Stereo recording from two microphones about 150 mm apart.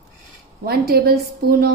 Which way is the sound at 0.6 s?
90° right.